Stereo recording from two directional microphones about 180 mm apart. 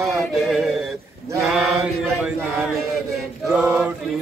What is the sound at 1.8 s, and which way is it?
Chant, 15° right (ahead or behind).